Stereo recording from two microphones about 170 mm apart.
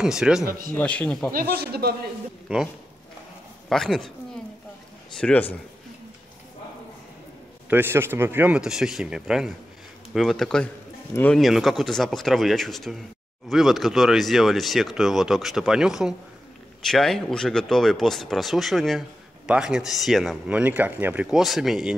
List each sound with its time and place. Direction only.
0.0 s speech: 5° right (ahead or behind)
0.5 s speech: 55° right (ahead or behind)
0.7 s a man's voice: 10° left (ahead or behind)
1.3 s speech: 60° right (ahead or behind)
2.4 s a man's voice: 5° right (ahead or behind)
7.7 s speech: 15° right (ahead or behind)